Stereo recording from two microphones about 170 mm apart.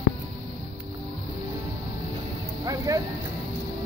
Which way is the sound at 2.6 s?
20° right (ahead or behind).